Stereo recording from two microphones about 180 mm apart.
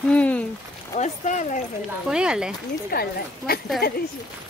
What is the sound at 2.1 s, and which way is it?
Speech, 5° right (ahead or behind).